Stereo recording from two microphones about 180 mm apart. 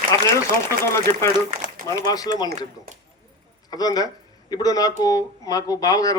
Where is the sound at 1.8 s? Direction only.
20° left (ahead or behind).